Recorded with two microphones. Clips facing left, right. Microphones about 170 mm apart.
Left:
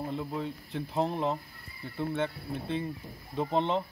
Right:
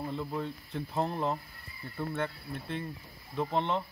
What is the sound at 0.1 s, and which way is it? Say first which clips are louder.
Speech: left 1 dB; 5° left (ahead or behind).